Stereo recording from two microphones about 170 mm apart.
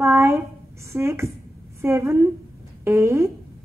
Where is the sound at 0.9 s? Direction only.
15° right (ahead or behind).